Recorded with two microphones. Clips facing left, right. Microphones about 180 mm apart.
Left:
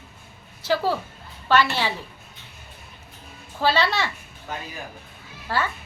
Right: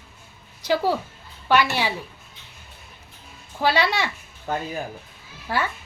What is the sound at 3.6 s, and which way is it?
Speech, 15° right (ahead or behind).